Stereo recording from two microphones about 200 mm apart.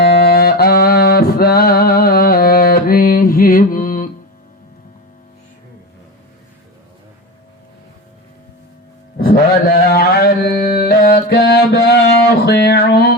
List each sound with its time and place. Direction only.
0.0 s music: 50° left (ahead or behind)
9.1 s mantra: 45° left (ahead or behind)